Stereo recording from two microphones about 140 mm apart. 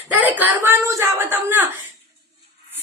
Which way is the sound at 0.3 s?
15° right (ahead or behind).